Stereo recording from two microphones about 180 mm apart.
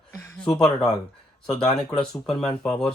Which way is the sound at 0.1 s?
15° left (ahead or behind).